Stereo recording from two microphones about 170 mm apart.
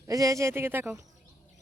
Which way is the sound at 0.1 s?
20° right (ahead or behind).